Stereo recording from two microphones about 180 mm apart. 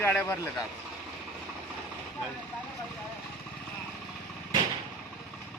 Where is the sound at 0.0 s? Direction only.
10° left (ahead or behind).